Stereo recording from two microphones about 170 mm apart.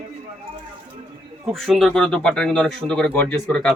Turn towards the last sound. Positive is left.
turn(degrees=5)  # may be behind; listen again after turning